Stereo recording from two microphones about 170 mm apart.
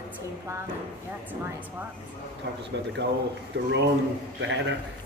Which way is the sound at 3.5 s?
90° right.